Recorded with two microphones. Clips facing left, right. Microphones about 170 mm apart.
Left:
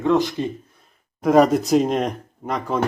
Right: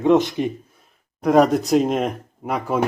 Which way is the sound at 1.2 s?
Centre (ahead or behind).